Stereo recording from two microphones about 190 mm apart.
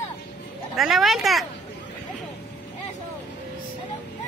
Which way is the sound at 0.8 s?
Centre (ahead or behind).